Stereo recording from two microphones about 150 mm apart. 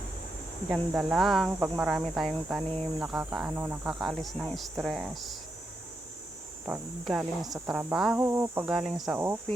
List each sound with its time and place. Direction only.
0.7 s speech: 5° right (ahead or behind)
1.5 s speech: 15° right (ahead or behind)
3.8 s speech: 5° right (ahead or behind)
6.7 s speech: 5° right (ahead or behind)
8.2 s speech: 20° right (ahead or behind)
8.6 s speech: 5° right (ahead or behind)
9.1 s speech: 15° right (ahead or behind)